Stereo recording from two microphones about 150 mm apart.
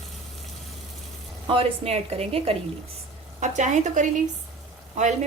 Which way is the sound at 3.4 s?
50° right (ahead or behind).